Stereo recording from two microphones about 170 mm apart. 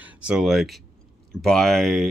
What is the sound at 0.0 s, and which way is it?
Speech, 5° right (ahead or behind).